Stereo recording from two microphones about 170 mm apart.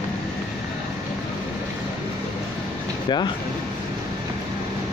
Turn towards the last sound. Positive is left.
turn(degrees=25)  # may be behind; listen again after turning